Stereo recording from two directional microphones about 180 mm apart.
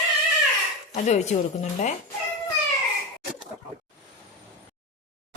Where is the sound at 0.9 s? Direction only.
40° left (ahead or behind).